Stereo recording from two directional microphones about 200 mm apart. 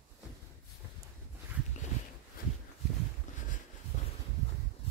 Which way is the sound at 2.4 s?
45° left (ahead or behind).